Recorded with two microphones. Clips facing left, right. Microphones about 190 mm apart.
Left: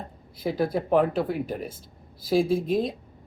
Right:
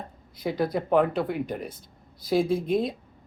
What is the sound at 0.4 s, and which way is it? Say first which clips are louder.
Speech: left 1 dB; 5° left (ahead or behind).